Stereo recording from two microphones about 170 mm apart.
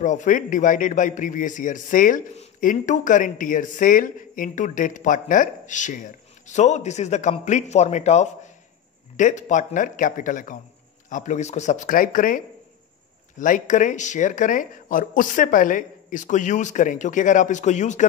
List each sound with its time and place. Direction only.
0.0 s a man's voice: 45° left (ahead or behind)